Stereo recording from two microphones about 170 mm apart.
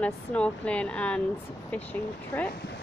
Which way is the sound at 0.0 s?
5° left (ahead or behind).